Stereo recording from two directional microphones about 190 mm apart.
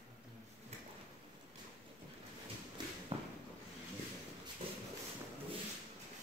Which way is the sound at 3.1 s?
30° right (ahead or behind).